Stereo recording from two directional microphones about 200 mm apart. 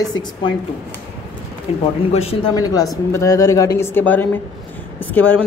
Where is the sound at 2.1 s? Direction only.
30° left (ahead or behind).